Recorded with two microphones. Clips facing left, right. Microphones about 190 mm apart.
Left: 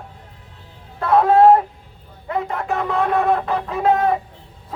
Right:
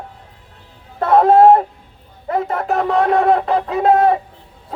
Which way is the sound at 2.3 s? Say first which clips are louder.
Right 4 dB; 40° right (ahead or behind).